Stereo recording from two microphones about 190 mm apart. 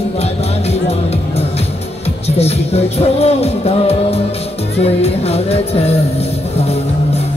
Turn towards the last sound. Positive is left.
turn(degrees=30)  # may be behind; listen again after turning